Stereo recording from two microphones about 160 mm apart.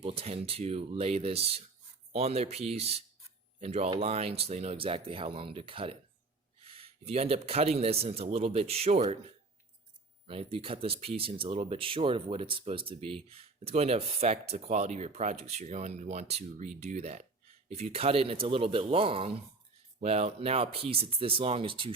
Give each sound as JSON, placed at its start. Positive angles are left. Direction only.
{"t": 0.0, "sound": "speech", "side_deg": -40}
{"t": 10.2, "sound": "speech", "side_deg": -40}